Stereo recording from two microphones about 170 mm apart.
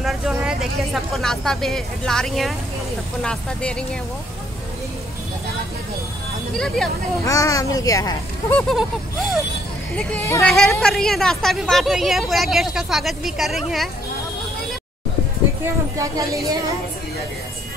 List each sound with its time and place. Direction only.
0.0 s a woman's voice: 5° right (ahead or behind)
6.5 s a woman's voice: 5° left (ahead or behind)
7.2 s speech: 20° left (ahead or behind)
8.5 s a woman's voice: centre (ahead or behind)
15.6 s speech: 20° right (ahead or behind)